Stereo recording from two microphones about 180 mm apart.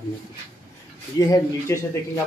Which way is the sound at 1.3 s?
15° left (ahead or behind).